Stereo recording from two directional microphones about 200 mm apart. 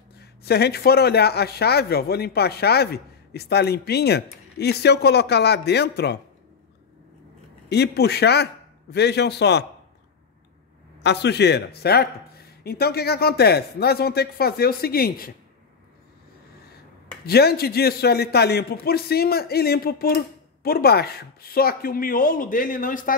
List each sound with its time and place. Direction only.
0.2 s a man's voice: 55° left (ahead or behind)
7.7 s speech: 55° left (ahead or behind)
11.0 s a man's voice: 60° left (ahead or behind)
17.3 s a man's voice: 50° left (ahead or behind)